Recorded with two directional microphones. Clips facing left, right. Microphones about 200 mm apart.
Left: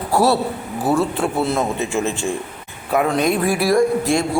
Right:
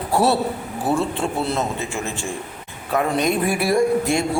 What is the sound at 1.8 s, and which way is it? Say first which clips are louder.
Speech: left 6 dB; 20° left (ahead or behind).